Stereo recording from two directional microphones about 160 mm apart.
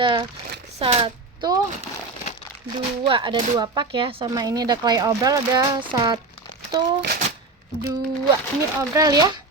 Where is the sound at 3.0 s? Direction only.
30° right (ahead or behind).